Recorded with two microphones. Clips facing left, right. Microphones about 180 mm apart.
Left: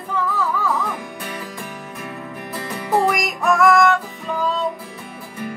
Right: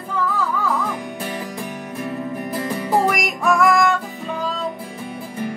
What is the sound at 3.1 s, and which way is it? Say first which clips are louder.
Music: even; centre (ahead or behind).